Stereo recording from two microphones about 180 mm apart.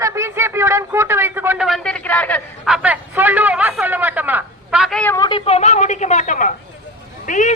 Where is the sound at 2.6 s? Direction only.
5° right (ahead or behind).